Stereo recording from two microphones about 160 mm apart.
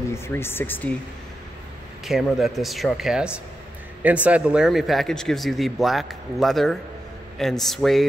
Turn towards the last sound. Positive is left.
turn(degrees=0)  # may be behind; listen again after turning